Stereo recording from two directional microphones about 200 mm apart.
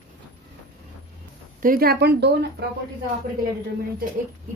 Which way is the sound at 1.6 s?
45° right (ahead or behind).